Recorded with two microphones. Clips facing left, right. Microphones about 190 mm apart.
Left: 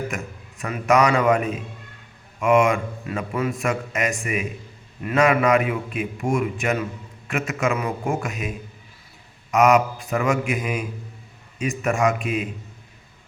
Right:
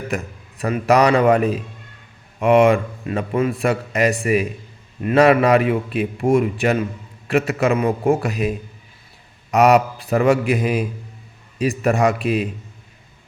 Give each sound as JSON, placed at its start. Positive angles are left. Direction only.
{"t": 0.1, "sound": "a man's voice", "side_deg": -35}